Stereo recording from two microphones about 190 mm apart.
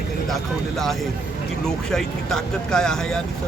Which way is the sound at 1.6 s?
5° left (ahead or behind).